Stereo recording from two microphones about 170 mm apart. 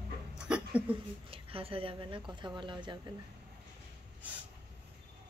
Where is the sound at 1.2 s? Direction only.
35° right (ahead or behind).